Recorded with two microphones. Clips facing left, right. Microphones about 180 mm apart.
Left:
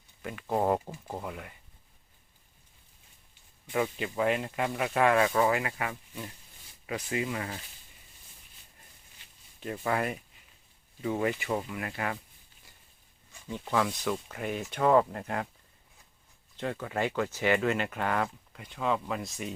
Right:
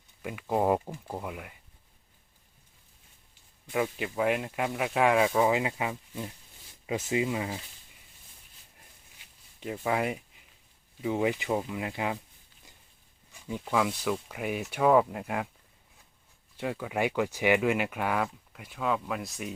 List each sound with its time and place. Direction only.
0.2 s speech: 10° right (ahead or behind)
3.7 s speech: 5° right (ahead or behind)
9.6 s speech: 15° right (ahead or behind)
13.5 s speech: 5° right (ahead or behind)
16.6 s speech: 10° right (ahead or behind)